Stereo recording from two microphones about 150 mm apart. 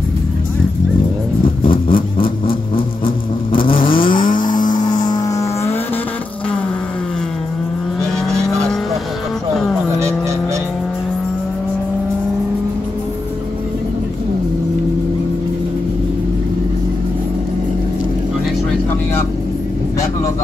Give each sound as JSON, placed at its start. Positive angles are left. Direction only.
{"t": 1.6, "sound": "vehicle", "side_deg": 35}
{"t": 3.5, "sound": "vehicle", "side_deg": 35}
{"t": 4.4, "sound": "music", "side_deg": 30}